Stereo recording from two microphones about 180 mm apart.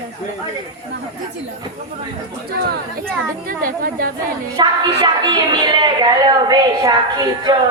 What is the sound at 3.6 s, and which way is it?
Speech, 50° right (ahead or behind).